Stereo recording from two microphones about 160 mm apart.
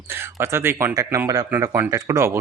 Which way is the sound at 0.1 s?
15° right (ahead or behind).